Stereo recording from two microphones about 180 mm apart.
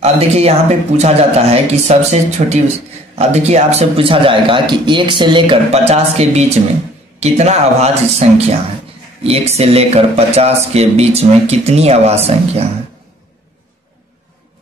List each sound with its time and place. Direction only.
0.0 s speech: 35° right (ahead or behind)